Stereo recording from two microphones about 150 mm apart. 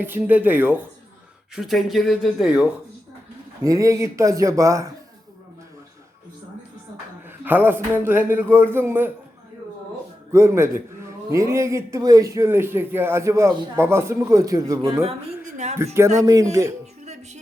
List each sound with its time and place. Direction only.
0.0 s speech: 10° right (ahead or behind)
1.5 s speech: centre (ahead or behind)
3.6 s speech: 20° right (ahead or behind)
7.3 s speech: 15° right (ahead or behind)
10.3 s speech: 20° right (ahead or behind)
15.4 s a sound: 55° right (ahead or behind)
16.0 s speech: 25° right (ahead or behind)